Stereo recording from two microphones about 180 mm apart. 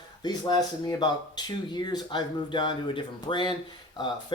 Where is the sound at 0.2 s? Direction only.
25° left (ahead or behind).